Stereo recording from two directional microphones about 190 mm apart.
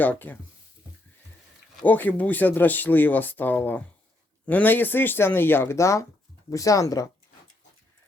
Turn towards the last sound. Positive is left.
turn(degrees=15)  # may be behind; listen again after turning